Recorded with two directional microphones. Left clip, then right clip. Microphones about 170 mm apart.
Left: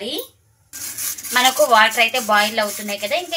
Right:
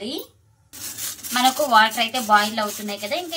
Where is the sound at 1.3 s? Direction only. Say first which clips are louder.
Left 3 dB; 20° left (ahead or behind).